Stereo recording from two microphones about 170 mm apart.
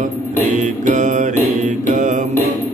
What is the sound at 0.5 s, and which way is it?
Mantra, 45° right (ahead or behind).